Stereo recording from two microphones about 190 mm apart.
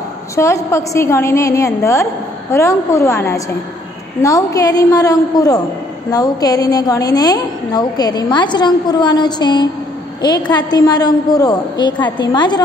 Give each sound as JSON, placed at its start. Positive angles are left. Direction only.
{"t": 0.4, "sound": "a woman's voice", "side_deg": 15}